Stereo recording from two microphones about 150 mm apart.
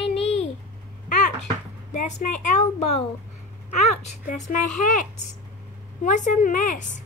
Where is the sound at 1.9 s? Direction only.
55° left (ahead or behind).